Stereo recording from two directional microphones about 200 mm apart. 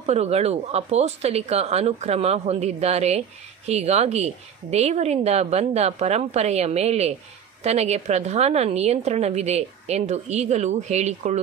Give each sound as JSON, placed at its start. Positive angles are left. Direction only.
{"t": 0.0, "sound": "speech", "side_deg": -30}